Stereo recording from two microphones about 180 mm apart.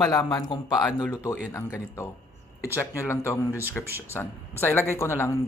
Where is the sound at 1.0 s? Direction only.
10° left (ahead or behind).